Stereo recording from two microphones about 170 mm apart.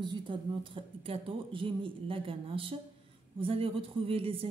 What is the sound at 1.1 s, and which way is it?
A man's voice, 30° right (ahead or behind).